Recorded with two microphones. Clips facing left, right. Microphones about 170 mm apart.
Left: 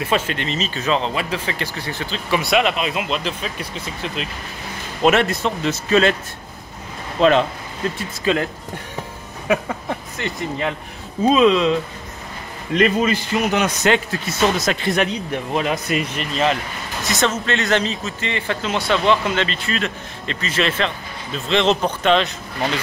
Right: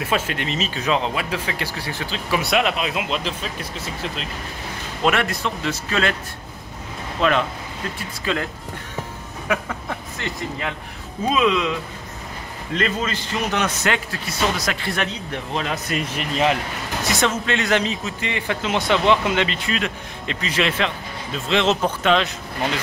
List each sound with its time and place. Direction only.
0.0 s speech: 5° right (ahead or behind)
5.0 s speech: 25° left (ahead or behind)
7.2 s speech: 25° left (ahead or behind)
9.5 s speech: 25° left (ahead or behind)
12.7 s a man's voice: 15° left (ahead or behind)
13.8 s a man's voice: 25° left (ahead or behind)
16.2 s speech: 15° right (ahead or behind)